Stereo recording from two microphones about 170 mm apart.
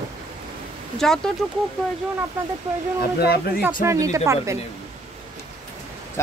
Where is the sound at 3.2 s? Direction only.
70° left (ahead or behind).